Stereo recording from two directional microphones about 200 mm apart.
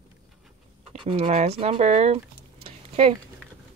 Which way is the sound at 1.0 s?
30° right (ahead or behind).